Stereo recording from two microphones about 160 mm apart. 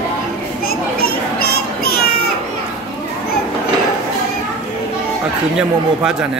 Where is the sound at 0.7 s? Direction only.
75° left (ahead or behind).